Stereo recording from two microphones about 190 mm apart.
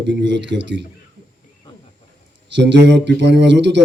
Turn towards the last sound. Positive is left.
turn(degrees=-70)  # may be behind; listen again after turning